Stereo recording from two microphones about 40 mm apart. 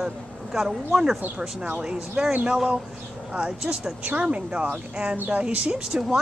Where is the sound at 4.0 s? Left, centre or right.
Right.